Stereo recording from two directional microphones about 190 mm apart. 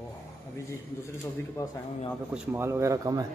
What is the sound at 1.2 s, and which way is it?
Speech, 15° left (ahead or behind).